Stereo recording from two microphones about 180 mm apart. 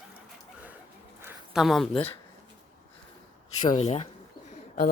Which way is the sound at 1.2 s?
5° right (ahead or behind).